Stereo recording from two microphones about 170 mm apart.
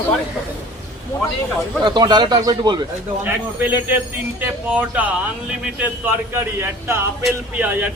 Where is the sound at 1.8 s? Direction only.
25° right (ahead or behind).